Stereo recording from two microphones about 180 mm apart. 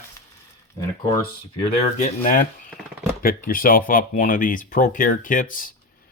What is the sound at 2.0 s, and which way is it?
Speech, 50° left (ahead or behind).